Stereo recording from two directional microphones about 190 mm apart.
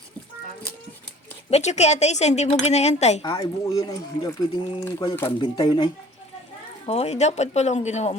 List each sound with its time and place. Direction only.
1.5 s speech: 35° left (ahead or behind)
3.2 s speech: 20° left (ahead or behind); by 8.1 s 35° left (ahead or behind)